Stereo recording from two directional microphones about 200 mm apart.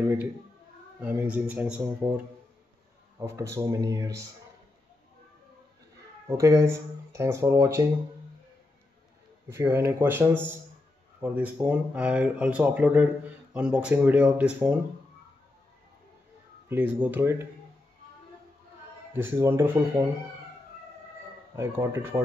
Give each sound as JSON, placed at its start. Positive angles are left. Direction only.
{"t": 0.0, "sound": "speech", "side_deg": -10}
{"t": 3.2, "sound": "speech", "side_deg": -15}
{"t": 6.2, "sound": "speech", "side_deg": -15}
{"t": 9.5, "sound": "speech", "side_deg": -10}
{"t": 16.6, "sound": "speech", "side_deg": -10}
{"t": 19.1, "sound": "speech", "side_deg": -10}
{"t": 21.5, "sound": "speech", "side_deg": -10}